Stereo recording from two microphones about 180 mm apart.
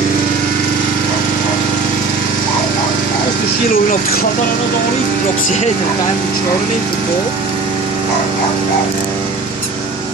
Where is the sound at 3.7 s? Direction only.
50° left (ahead or behind).